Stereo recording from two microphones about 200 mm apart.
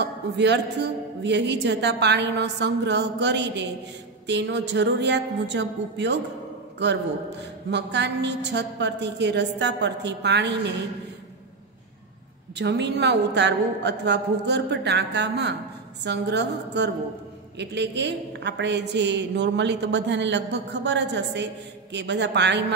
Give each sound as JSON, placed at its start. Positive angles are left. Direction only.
{"t": 0.0, "sound": "a woman's voice", "side_deg": -60}
{"t": 7.7, "sound": "a woman's voice", "side_deg": -60}
{"t": 12.5, "sound": "a woman's voice", "side_deg": -60}